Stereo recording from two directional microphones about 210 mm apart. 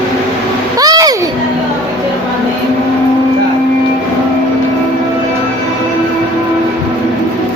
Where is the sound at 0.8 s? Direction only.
20° right (ahead or behind).